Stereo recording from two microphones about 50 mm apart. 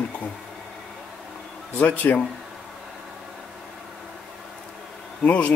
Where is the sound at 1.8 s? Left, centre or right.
Left.